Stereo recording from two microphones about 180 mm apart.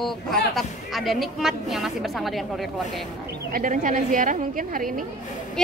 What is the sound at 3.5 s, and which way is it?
A woman's voice, 45° right (ahead or behind).